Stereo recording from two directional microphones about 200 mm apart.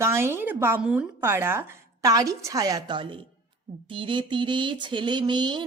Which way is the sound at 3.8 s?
25° right (ahead or behind).